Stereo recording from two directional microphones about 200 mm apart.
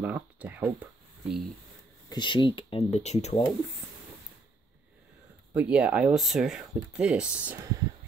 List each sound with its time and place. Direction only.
0.0 s speech: 5° right (ahead or behind)
2.0 s speech: 20° left (ahead or behind)
5.5 s speech: 5° right (ahead or behind)